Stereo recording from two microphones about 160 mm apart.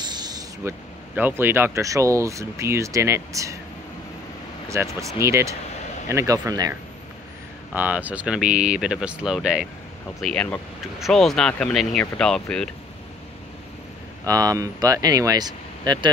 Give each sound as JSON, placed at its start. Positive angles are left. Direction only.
{"t": 0.0, "sound": "spray", "side_deg": -25}
{"t": 1.1, "sound": "speech", "side_deg": -10}
{"t": 4.6, "sound": "speech", "side_deg": -20}
{"t": 7.7, "sound": "speech", "side_deg": -10}
{"t": 10.2, "sound": "speech", "side_deg": 10}
{"t": 14.2, "sound": "speech", "side_deg": -20}